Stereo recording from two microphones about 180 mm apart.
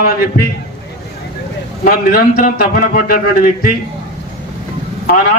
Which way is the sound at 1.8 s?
55° left (ahead or behind).